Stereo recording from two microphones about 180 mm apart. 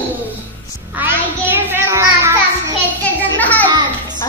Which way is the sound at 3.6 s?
25° right (ahead or behind).